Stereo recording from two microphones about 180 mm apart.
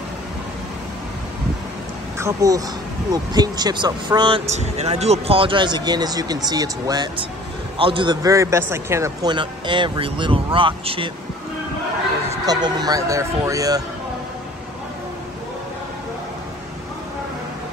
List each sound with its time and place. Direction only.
2.1 s a man's voice: 15° right (ahead or behind)
4.5 s a man's voice: 40° right (ahead or behind)
12.4 s a man's voice: 20° right (ahead or behind)